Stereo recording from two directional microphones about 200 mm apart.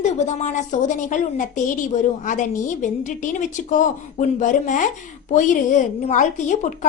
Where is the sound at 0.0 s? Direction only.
35° left (ahead or behind).